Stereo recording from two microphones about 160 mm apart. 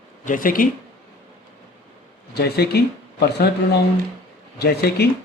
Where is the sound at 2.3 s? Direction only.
90° left.